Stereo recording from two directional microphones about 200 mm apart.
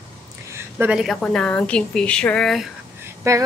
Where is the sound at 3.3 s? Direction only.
15° right (ahead or behind).